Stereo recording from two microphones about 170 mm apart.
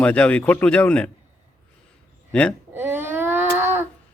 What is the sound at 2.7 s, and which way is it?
Baby cry, 15° right (ahead or behind).